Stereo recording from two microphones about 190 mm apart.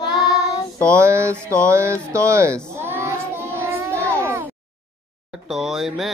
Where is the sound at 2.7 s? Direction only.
15° right (ahead or behind).